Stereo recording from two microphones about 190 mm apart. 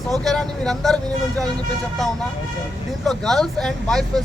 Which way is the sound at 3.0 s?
Centre (ahead or behind).